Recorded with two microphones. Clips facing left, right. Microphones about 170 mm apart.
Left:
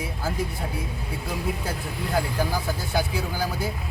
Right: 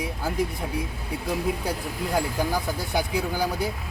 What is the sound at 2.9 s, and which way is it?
Speech, 15° right (ahead or behind).